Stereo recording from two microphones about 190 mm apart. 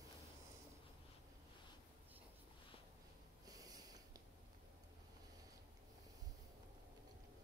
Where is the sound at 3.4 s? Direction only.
20° right (ahead or behind).